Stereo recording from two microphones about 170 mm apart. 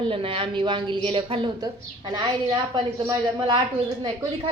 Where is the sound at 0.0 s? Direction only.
30° right (ahead or behind).